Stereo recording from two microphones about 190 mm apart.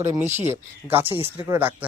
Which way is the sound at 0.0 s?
10° right (ahead or behind).